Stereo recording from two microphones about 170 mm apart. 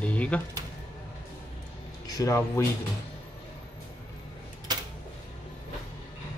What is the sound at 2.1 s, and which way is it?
Speech, 20° left (ahead or behind).